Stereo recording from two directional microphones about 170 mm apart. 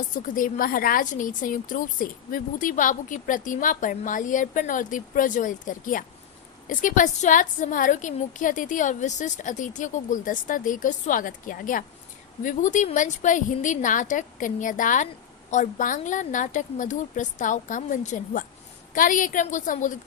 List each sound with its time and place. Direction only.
0.1 s a woman's voice: 55° left (ahead or behind)